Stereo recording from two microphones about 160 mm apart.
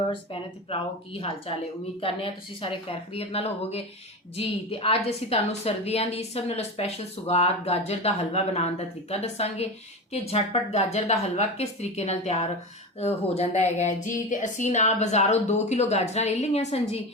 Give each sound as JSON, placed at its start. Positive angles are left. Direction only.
{"t": 0.1, "sound": "a woman's voice", "side_deg": 35}
{"t": 2.0, "sound": "a woman's voice", "side_deg": 35}